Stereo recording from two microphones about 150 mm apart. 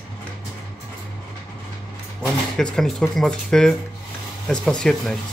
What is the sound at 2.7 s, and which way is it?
Speech, centre (ahead or behind).